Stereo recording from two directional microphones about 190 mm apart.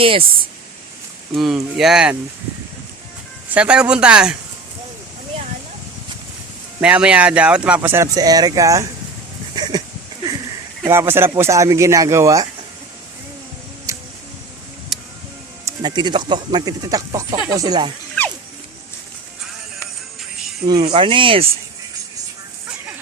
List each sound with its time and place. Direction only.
0.0 s speech: 30° right (ahead or behind)
1.4 s speech: centre (ahead or behind)
3.5 s speech: 5° right (ahead or behind)
6.7 s speech: 5° right (ahead or behind)
9.6 s goat: 20° right (ahead or behind)
10.8 s speech: 15° right (ahead or behind)
13.9 s a sound: 15° right (ahead or behind)
15.6 s speech: 20° right (ahead or behind)
20.7 s speech: 20° right (ahead or behind)